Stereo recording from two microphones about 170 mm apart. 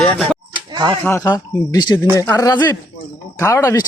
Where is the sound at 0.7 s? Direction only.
25° right (ahead or behind).